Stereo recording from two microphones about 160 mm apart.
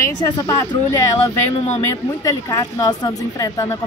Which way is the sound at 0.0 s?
20° left (ahead or behind).